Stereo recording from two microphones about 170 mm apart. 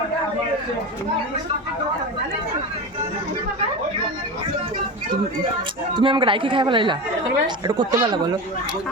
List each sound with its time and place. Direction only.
5.9 s speech: 30° right (ahead or behind)